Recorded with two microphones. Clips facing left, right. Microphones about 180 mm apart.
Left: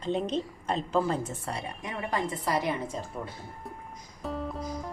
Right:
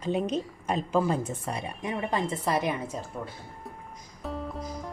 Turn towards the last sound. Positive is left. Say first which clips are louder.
# left 1 dB
turn(degrees=0)  # may be behind; listen again after turning